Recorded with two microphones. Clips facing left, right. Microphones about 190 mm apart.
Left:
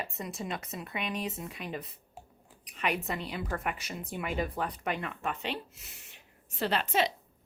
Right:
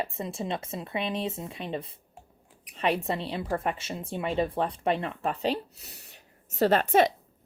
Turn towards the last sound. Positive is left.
turn(degrees=-50)  # may be behind; listen again after turning